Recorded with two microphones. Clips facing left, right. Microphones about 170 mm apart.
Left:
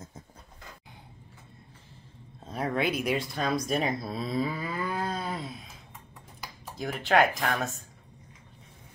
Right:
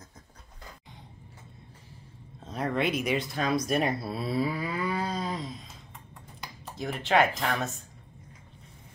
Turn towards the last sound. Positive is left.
turn(degrees=0)  # may be behind; listen again after turning